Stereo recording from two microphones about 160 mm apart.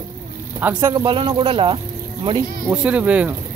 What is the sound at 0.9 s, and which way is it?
Speech, 30° right (ahead or behind).